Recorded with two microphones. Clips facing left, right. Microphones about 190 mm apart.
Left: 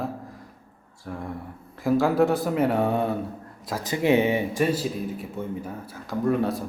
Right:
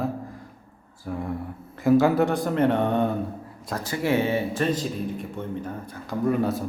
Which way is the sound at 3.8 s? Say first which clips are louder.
Left 3 dB; 20° left (ahead or behind).